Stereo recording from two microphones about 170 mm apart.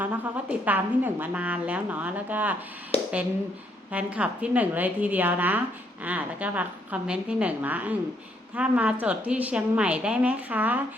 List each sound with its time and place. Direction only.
0.0 s a woman's voice: 10° right (ahead or behind)
2.9 s a sound: 35° left (ahead or behind)
3.9 s a woman's voice: 10° right (ahead or behind)